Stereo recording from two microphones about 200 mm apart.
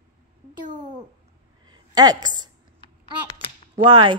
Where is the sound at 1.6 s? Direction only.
20° right (ahead or behind).